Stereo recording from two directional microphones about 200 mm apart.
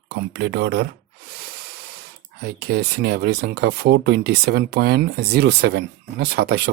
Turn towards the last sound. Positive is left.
turn(degrees=-55)  # may be behind; listen again after turning